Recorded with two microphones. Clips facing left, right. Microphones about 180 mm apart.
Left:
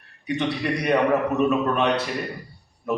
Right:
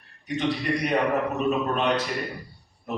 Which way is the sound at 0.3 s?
65° left (ahead or behind).